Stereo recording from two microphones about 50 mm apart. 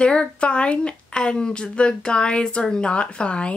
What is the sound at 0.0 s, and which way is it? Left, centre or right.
A woman's voice, left.